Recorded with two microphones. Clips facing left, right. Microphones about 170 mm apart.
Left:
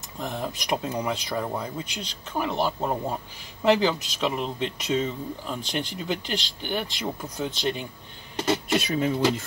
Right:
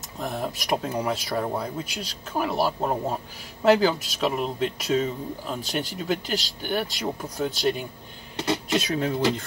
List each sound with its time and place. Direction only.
0.2 s speech: 5° right (ahead or behind)